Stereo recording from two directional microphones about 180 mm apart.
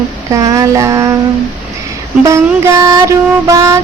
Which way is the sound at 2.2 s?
20° right (ahead or behind).